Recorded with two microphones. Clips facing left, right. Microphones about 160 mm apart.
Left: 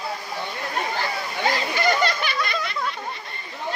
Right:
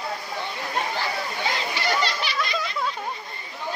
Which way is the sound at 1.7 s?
50° left (ahead or behind).